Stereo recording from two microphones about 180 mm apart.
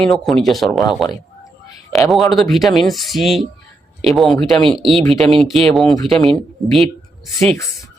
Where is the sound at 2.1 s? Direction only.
Centre (ahead or behind).